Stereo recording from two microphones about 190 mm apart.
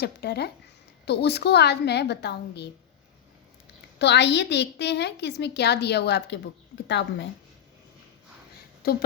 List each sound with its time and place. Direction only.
0.0 s a woman's voice: 60° left (ahead or behind)
3.9 s a woman's voice: 65° left (ahead or behind)
8.8 s speech: 55° left (ahead or behind)